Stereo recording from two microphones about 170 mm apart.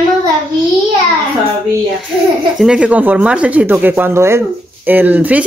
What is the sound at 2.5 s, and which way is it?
Speech, 5° right (ahead or behind).